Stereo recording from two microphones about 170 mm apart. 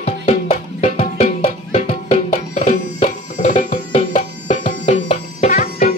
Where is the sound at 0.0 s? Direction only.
40° left (ahead or behind).